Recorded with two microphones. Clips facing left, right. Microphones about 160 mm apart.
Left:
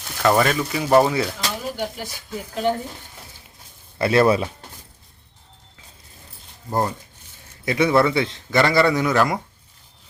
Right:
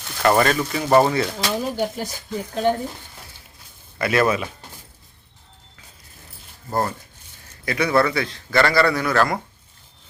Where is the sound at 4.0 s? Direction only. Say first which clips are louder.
Left 3 dB; 30° left (ahead or behind).